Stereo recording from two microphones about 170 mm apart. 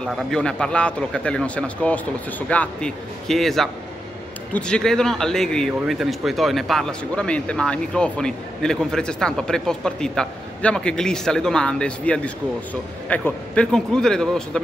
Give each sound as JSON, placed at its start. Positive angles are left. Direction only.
{"t": 0.0, "sound": "speech", "side_deg": 5}